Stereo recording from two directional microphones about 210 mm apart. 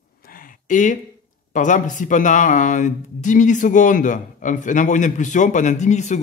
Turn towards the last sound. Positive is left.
turn(degrees=35)  # may be behind; listen again after turning